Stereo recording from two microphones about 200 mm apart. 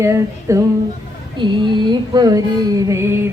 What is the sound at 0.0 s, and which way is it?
Music, 15° right (ahead or behind).